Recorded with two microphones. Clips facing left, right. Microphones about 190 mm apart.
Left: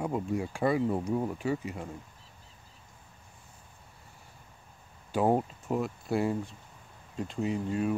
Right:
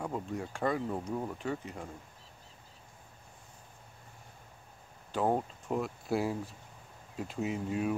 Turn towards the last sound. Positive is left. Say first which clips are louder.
# left 3 dB
turn(degrees=-5)  # may be behind; listen again after turning